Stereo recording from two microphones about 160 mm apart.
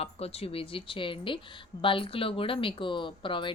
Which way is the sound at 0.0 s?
40° left (ahead or behind).